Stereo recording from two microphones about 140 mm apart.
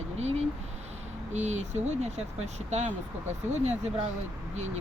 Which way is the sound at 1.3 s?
55° right (ahead or behind).